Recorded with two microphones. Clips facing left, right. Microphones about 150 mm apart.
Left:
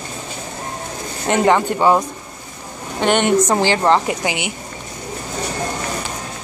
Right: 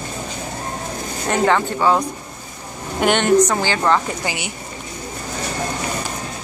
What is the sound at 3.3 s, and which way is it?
A woman's voice, 25° left (ahead or behind).